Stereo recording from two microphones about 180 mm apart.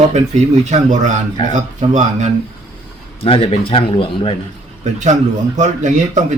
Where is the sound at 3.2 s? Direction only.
30° left (ahead or behind).